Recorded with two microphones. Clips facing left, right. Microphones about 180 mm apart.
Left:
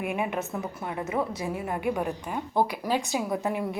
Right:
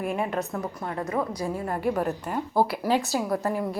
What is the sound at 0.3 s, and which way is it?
A woman's voice, 5° left (ahead or behind).